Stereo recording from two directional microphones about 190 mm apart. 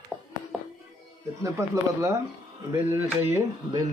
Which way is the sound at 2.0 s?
15° right (ahead or behind).